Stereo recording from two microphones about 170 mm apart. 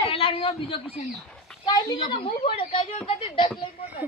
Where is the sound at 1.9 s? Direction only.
30° left (ahead or behind).